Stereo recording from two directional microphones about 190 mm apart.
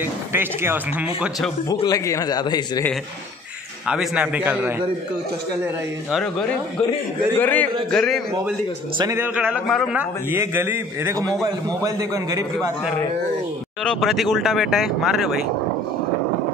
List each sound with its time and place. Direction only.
0.0 s a man's voice: 10° right (ahead or behind)
1.7 s a man's voice: 20° left (ahead or behind)
3.8 s a man's voice: 5° right (ahead or behind)
7.3 s a man's voice: 10° left (ahead or behind)
8.9 s a man's voice: 20° right (ahead or behind)
9.2 s a man's voice: 10° right (ahead or behind)
10.3 s a man's voice: 15° right (ahead or behind)
13.8 s speech: centre (ahead or behind)